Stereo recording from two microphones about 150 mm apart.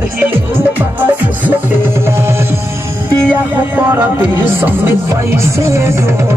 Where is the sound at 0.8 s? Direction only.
10° right (ahead or behind).